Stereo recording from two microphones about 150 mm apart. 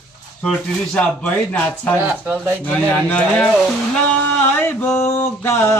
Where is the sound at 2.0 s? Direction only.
10° right (ahead or behind).